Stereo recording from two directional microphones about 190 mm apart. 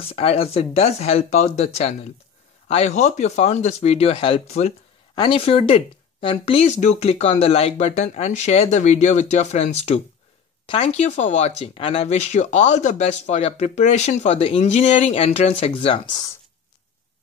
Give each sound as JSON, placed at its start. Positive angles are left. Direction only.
{"t": 0.0, "sound": "speech", "side_deg": 30}